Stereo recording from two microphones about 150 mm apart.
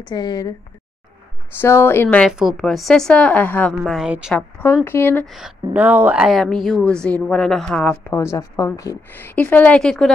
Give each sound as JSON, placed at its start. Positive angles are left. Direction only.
{"t": 0.1, "sound": "a woman's voice", "side_deg": 30}
{"t": 1.6, "sound": "a woman's voice", "side_deg": 15}
{"t": 4.3, "sound": "a woman's voice", "side_deg": 10}
{"t": 5.2, "sound": "a woman's voice", "side_deg": 0}